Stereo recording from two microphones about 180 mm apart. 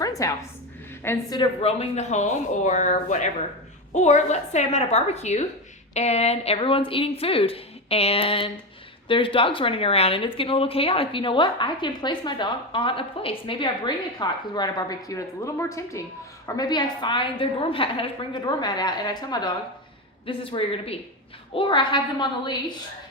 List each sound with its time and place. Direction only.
0.0 s a sound: 20° left (ahead or behind)
1.0 s a woman's voice: 15° left (ahead or behind)
1.4 s a woman's voice: 35° left (ahead or behind)